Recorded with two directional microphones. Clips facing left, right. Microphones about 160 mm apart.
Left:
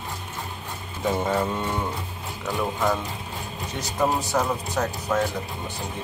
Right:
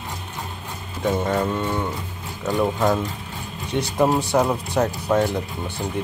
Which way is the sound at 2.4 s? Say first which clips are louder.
Right 5 dB; 20° right (ahead or behind).